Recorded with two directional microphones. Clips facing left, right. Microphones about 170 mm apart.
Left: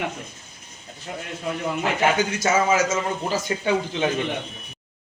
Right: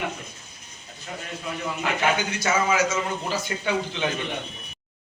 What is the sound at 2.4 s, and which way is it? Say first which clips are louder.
A man's voice: left 2 dB; 25° left (ahead or behind).